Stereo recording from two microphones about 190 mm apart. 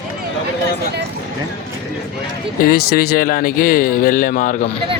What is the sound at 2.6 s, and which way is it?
Speech, 50° left (ahead or behind).